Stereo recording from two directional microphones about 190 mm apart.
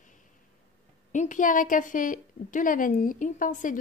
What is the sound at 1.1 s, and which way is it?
A woman's voice, 40° left (ahead or behind).